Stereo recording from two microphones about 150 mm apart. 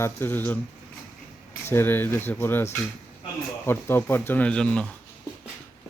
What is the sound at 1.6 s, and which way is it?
Speech, 15° left (ahead or behind).